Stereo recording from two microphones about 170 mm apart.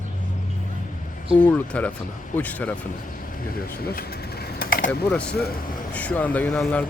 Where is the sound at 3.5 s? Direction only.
60° left (ahead or behind).